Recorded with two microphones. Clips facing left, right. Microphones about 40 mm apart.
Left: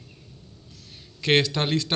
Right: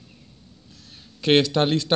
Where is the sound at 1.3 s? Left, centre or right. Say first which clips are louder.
Right 3 dB; right.